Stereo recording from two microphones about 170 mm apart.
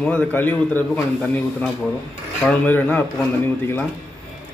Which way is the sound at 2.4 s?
10° left (ahead or behind).